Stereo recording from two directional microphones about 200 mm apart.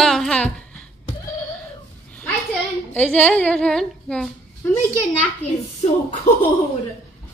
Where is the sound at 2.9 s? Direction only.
10° left (ahead or behind).